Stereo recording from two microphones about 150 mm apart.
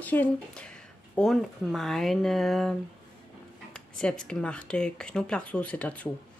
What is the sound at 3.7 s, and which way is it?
Speech, 5° left (ahead or behind).